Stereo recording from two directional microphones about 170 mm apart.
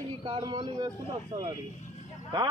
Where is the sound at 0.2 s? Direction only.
25° right (ahead or behind).